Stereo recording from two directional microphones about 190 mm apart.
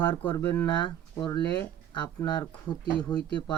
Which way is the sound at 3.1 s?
20° left (ahead or behind).